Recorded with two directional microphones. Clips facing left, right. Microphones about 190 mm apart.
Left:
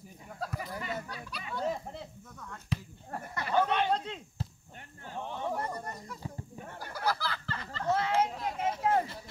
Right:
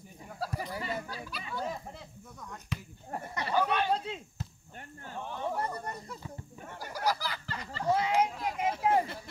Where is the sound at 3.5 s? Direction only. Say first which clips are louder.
Left 1 dB; 25° left (ahead or behind).